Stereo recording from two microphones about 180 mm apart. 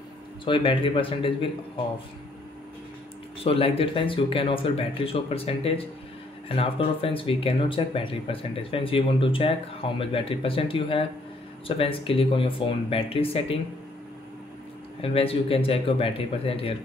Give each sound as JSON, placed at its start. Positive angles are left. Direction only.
{"t": 0.5, "sound": "speech", "side_deg": 30}
{"t": 3.4, "sound": "speech", "side_deg": 30}
{"t": 15.0, "sound": "speech", "side_deg": 30}